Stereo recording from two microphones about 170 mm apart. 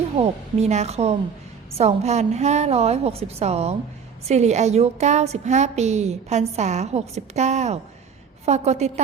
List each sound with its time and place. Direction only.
0.2 s a woman's voice: 40° right (ahead or behind)